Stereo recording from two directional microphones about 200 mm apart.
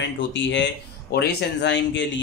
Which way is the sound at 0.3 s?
65° left (ahead or behind).